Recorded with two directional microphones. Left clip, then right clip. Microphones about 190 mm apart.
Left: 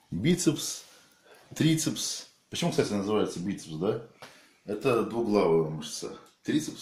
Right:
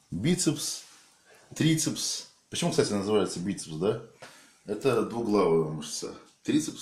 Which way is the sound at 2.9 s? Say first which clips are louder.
Right 2 dB; 25° right (ahead or behind).